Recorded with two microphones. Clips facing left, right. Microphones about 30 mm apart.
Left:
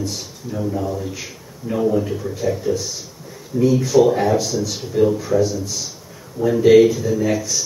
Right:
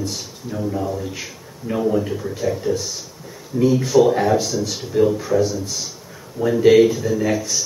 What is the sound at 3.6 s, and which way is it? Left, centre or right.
Speech, right.